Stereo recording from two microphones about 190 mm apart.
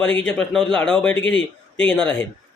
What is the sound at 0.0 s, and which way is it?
Speech, 5° left (ahead or behind).